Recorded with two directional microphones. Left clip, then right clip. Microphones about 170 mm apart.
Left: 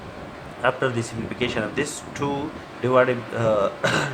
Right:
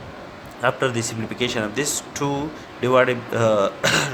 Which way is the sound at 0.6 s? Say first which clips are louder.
Right 1 dB; 60° right (ahead or behind).